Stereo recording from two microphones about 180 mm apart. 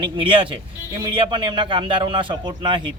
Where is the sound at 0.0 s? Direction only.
30° right (ahead or behind).